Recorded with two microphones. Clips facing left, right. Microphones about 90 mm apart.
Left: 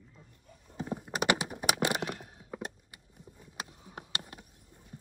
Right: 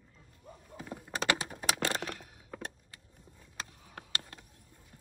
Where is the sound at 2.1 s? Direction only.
35° left (ahead or behind).